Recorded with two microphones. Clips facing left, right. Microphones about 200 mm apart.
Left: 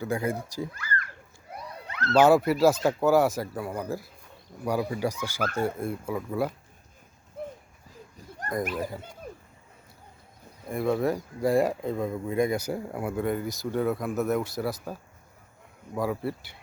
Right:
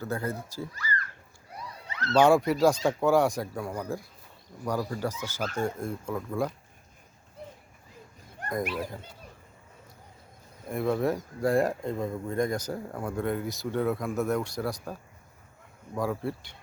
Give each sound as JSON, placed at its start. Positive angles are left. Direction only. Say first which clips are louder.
{"t": 0.0, "sound": "speech", "louder": "left 4 dB", "side_deg": 15}
{"t": 0.7, "sound": "speech", "louder": "left 1 dB", "side_deg": 55}
{"t": 1.7, "sound": "police car", "louder": "left 3 dB", "side_deg": 55}
{"t": 2.1, "sound": "speech", "louder": "left 2 dB", "side_deg": 5}
{"t": 7.4, "sound": "clip-clop", "louder": "left 7 dB", "side_deg": 55}
{"t": 10.7, "sound": "speech", "louder": "left 1 dB", "side_deg": 0}
{"t": 16.0, "sound": "speech", "louder": "left 1 dB", "side_deg": 5}